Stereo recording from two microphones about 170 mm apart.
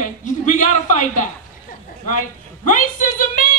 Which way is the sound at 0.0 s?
50° left (ahead or behind).